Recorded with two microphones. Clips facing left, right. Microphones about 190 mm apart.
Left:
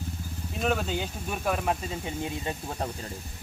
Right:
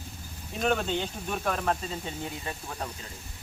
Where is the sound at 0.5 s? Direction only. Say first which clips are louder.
Right 1 dB; centre (ahead or behind); by 3.1 s 35° left (ahead or behind).